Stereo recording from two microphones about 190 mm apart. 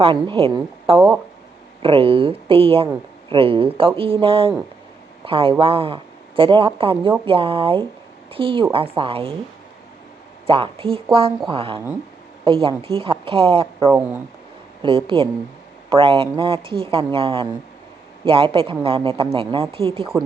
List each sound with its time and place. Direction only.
0.0 s a woman's voice: 30° right (ahead or behind)
10.4 s speech: 30° right (ahead or behind)